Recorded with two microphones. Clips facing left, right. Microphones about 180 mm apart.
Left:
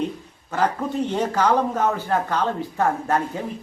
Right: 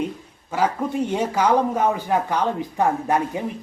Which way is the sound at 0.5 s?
10° right (ahead or behind).